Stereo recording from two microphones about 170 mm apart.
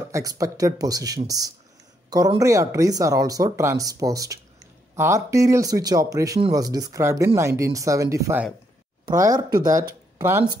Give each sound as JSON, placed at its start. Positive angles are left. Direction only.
{"t": 0.1, "sound": "speech", "side_deg": -20}